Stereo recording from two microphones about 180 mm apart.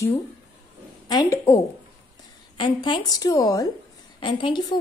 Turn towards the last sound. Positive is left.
turn(degrees=25)  # may be behind; listen again after turning